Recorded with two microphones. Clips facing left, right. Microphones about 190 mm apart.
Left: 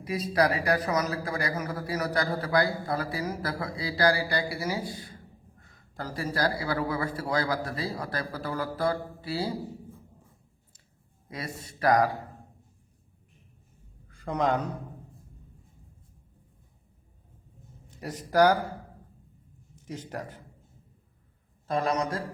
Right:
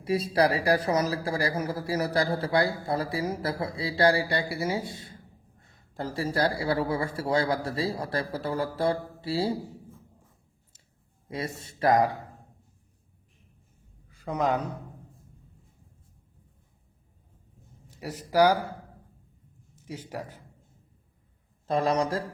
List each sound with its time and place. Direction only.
0.0 s speech: 30° right (ahead or behind)
11.3 s speech: 25° right (ahead or behind)
14.1 s a man's voice: 5° right (ahead or behind)
17.9 s speech: 10° right (ahead or behind)
19.9 s a man's voice: 10° right (ahead or behind)
21.7 s speech: 30° right (ahead or behind)